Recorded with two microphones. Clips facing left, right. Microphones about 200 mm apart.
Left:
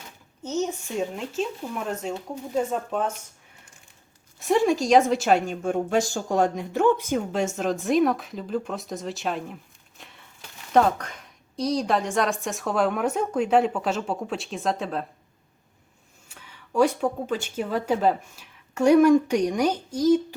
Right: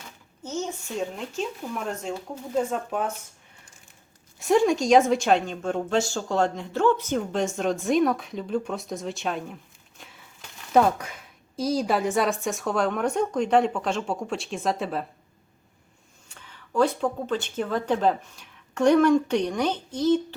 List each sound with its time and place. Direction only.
0.4 s speech: 20° left (ahead or behind)
1.9 s a woman's voice: 5° left (ahead or behind)
4.4 s a woman's voice: centre (ahead or behind)
10.0 s a sound: centre (ahead or behind)
10.7 s a woman's voice: 5° right (ahead or behind)
16.3 s speech: 10° left (ahead or behind)